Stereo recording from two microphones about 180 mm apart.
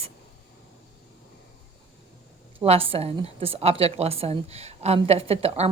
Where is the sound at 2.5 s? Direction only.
30° right (ahead or behind).